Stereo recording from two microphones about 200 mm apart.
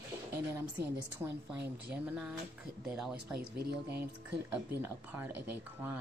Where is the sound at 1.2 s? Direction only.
10° right (ahead or behind).